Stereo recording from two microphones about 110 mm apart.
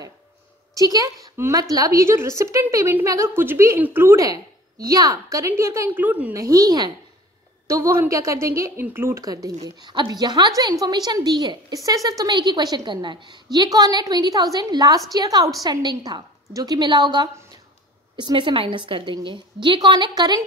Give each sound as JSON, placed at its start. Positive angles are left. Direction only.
{"t": 0.7, "sound": "a woman's voice", "side_deg": -35}
{"t": 1.3, "sound": "a woman's voice", "side_deg": -25}
{"t": 6.3, "sound": "a woman's voice", "side_deg": -30}